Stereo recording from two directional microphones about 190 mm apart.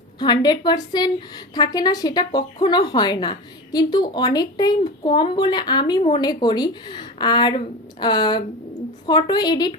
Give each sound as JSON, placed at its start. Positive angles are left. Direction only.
{"t": 0.2, "sound": "speech", "side_deg": 25}